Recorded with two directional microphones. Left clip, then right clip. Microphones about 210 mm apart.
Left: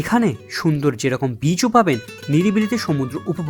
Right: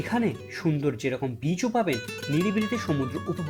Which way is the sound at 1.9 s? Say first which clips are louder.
Left 7 dB; centre (ahead or behind).